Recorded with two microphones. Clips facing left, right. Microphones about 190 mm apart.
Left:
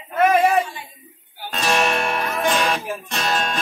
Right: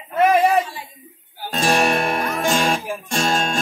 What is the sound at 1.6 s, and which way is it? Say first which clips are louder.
Guitar: right 2 dB; 50° right (ahead or behind).